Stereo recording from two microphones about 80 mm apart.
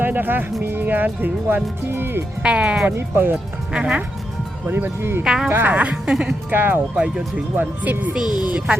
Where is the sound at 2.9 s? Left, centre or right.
Right.